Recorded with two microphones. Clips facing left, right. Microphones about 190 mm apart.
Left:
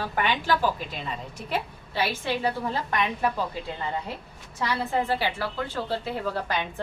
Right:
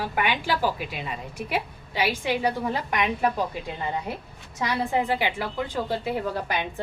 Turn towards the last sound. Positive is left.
turn(degrees=-15)  # may be behind; listen again after turning